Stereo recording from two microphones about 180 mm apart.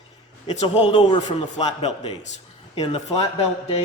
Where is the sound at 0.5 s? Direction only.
30° left (ahead or behind).